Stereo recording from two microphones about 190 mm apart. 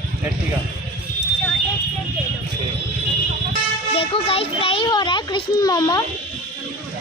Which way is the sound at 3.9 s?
30° left (ahead or behind).